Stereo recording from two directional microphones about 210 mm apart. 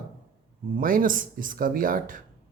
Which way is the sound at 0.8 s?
40° right (ahead or behind).